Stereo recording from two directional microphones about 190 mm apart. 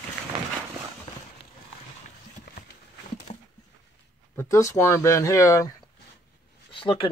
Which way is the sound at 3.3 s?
40° left (ahead or behind).